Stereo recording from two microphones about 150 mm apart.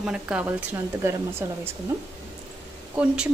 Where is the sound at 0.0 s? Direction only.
5° right (ahead or behind).